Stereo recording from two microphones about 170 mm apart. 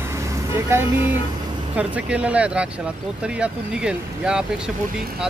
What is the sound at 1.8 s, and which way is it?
Speech, 5° right (ahead or behind).